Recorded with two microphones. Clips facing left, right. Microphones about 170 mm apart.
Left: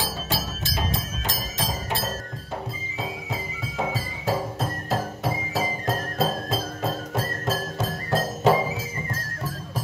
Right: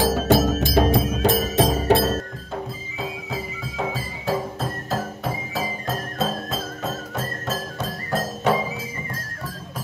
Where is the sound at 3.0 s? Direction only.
Centre (ahead or behind).